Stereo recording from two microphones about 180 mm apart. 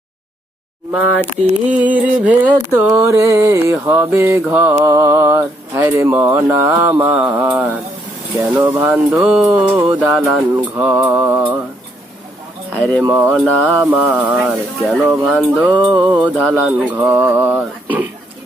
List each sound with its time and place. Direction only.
0.9 s speech: 10° right (ahead or behind)
12.7 s speech: 10° left (ahead or behind)
13.1 s speech: 10° right (ahead or behind)
15.7 s music: 25° right (ahead or behind)
16.4 s speech: 10° right (ahead or behind)